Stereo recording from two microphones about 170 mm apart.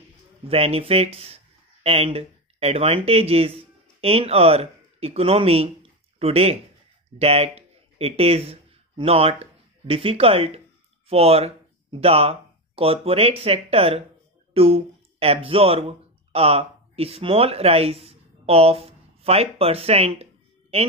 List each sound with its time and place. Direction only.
0.5 s speech: 35° right (ahead or behind)